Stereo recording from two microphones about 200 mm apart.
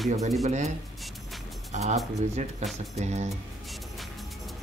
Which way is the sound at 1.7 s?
35° right (ahead or behind).